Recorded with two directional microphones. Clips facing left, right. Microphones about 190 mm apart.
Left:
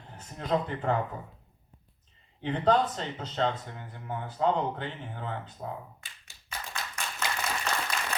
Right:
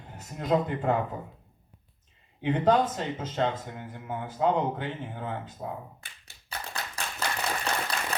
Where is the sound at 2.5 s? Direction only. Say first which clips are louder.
Right 2 dB; 10° right (ahead or behind).